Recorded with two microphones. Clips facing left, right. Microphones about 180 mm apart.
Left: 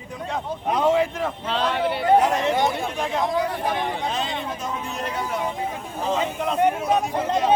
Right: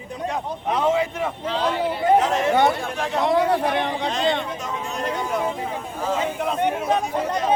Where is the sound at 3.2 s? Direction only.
70° right (ahead or behind).